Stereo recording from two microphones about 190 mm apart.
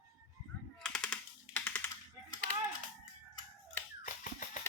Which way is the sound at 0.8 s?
5° left (ahead or behind).